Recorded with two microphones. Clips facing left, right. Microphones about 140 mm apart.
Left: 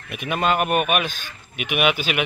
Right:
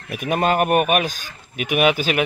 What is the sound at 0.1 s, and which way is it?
Speech, 40° right (ahead or behind).